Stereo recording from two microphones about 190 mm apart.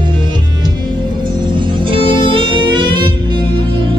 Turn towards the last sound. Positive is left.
turn(degrees=-25)  # may be behind; listen again after turning